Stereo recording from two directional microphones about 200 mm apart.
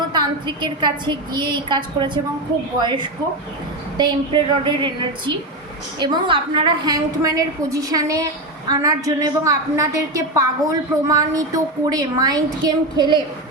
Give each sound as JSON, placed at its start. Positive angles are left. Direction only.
{"t": 0.1, "sound": "a woman's voice", "side_deg": -25}